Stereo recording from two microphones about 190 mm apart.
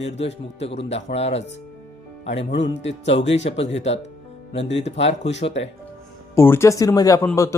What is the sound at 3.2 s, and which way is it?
Speech, 70° left (ahead or behind).